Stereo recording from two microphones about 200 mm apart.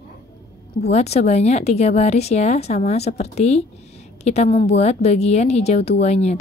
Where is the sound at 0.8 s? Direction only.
35° left (ahead or behind).